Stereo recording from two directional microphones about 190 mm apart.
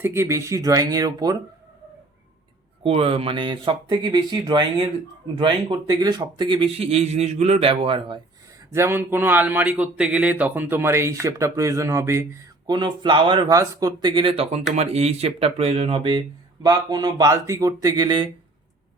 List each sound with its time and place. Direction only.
0.0 s speech: 15° right (ahead or behind)
2.8 s a man's voice: 30° right (ahead or behind)
8.7 s a man's voice: 15° right (ahead or behind)